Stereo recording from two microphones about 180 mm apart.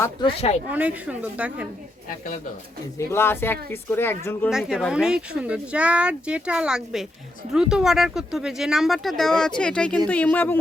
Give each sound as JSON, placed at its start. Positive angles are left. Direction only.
{"t": 0.0, "sound": "speech", "side_deg": 25}
{"t": 0.7, "sound": "a woman's voice", "side_deg": -10}
{"t": 3.1, "sound": "speech", "side_deg": 15}
{"t": 4.4, "sound": "speech", "side_deg": -5}